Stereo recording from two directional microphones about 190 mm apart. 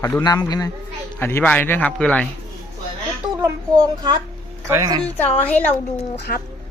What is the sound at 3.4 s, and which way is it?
Speech, 20° right (ahead or behind).